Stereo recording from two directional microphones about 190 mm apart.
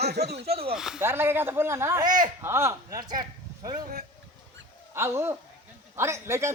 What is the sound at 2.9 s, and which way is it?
Speech, 50° right (ahead or behind).